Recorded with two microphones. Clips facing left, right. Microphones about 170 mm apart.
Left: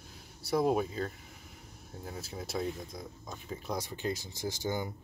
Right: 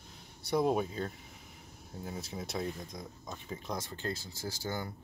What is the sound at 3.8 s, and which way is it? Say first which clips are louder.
Speech: left 3 dB; 15° left (ahead or behind).